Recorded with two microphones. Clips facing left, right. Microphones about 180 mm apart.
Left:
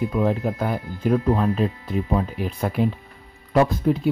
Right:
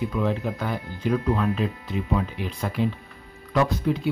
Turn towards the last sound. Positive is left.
turn(degrees=45)  # may be behind; listen again after turning